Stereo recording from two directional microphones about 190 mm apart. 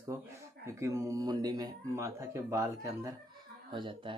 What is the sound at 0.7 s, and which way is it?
Speech, 15° right (ahead or behind).